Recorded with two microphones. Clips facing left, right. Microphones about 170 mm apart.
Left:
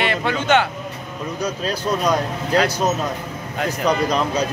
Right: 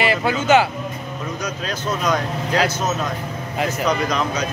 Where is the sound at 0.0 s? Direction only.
5° right (ahead or behind).